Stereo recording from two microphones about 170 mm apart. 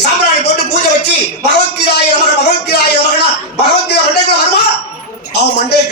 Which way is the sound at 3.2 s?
80° left.